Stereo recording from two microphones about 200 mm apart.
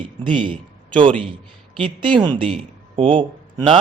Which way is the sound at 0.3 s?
25° right (ahead or behind).